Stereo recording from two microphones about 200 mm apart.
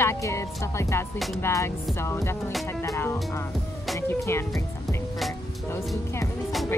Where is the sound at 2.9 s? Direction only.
10° left (ahead or behind).